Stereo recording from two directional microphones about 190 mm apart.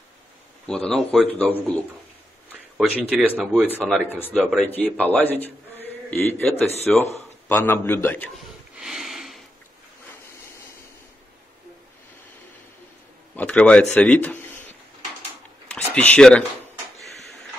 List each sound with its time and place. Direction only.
0.7 s speech: 5° left (ahead or behind)
2.8 s a man's voice: 5° right (ahead or behind)
8.7 s sniff: centre (ahead or behind)
13.4 s a man's voice: 5° left (ahead or behind)
15.7 s speech: 5° left (ahead or behind)